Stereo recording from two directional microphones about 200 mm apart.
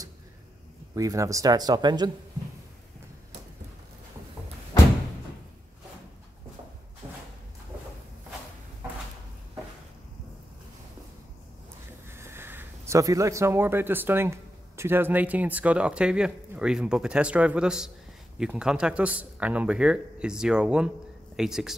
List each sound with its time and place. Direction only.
0.9 s speech: 15° right (ahead or behind)
12.1 s speech: 10° right (ahead or behind)